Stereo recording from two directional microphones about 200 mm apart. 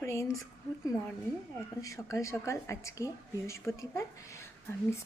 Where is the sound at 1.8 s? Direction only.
15° left (ahead or behind).